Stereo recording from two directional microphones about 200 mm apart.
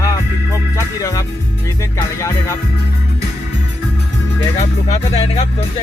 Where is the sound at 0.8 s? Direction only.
15° left (ahead or behind).